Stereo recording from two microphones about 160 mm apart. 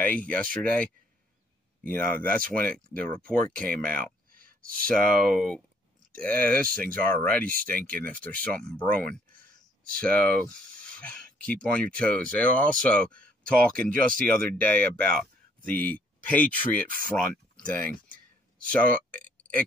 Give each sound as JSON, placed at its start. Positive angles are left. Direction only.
{"t": 0.0, "sound": "speech", "side_deg": 10}
{"t": 4.0, "sound": "a sound", "side_deg": -60}
{"t": 4.8, "sound": "speech", "side_deg": 5}